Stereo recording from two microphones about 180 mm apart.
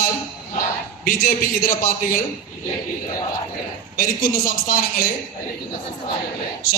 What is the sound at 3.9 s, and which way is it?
A man's voice, 55° left (ahead or behind).